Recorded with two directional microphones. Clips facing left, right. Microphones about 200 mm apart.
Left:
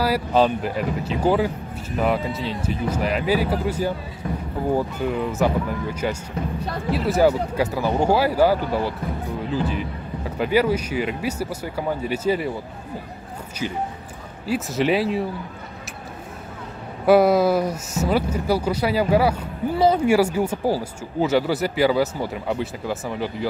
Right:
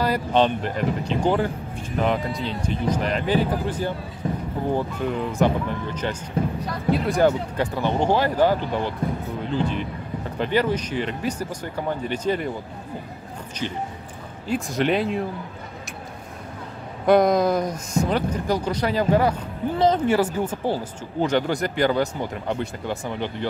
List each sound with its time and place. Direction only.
0.0 s speech: 5° left (ahead or behind)
4.2 s speech: 25° right (ahead or behind)
4.7 s speech: 5° left (ahead or behind)
13.6 s speech: 10° left (ahead or behind)
17.0 s speech: 5° left (ahead or behind)